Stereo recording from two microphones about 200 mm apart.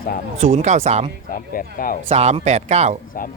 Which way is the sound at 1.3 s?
45° left (ahead or behind).